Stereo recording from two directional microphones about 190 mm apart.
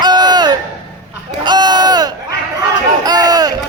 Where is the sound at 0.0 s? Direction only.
20° right (ahead or behind).